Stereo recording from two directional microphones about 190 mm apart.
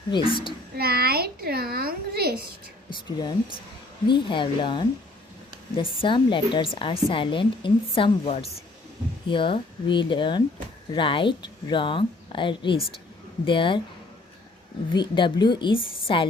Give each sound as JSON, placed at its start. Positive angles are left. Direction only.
{"t": 0.1, "sound": "a woman's voice", "side_deg": 25}
{"t": 0.8, "sound": "speech", "side_deg": -55}
{"t": 1.7, "sound": "a sound", "side_deg": -50}
{"t": 2.9, "sound": "a woman's voice", "side_deg": 20}
{"t": 14.9, "sound": "a woman's voice", "side_deg": 25}